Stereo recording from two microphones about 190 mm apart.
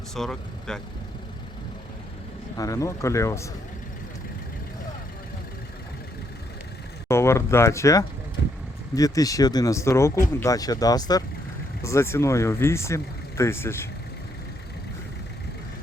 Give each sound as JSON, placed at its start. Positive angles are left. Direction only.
{"t": 0.1, "sound": "speech", "side_deg": 5}
{"t": 2.6, "sound": "speech", "side_deg": 15}
{"t": 7.1, "sound": "speech", "side_deg": 15}